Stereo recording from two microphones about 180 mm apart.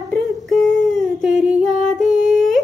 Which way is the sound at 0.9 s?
Centre (ahead or behind).